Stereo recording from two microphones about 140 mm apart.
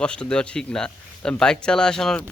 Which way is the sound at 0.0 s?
5° left (ahead or behind).